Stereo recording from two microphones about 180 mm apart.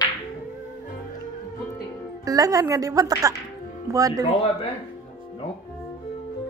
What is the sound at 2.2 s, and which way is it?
A woman's voice, 20° right (ahead or behind).